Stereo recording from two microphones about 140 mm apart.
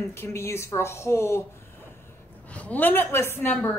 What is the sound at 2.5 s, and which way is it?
A woman's voice, 10° left (ahead or behind).